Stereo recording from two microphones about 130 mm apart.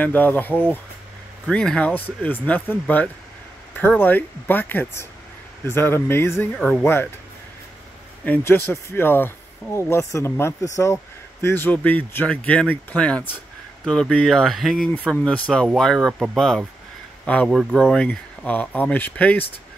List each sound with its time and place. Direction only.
0.0 s speech: 15° left (ahead or behind)
8.3 s speech: 15° left (ahead or behind)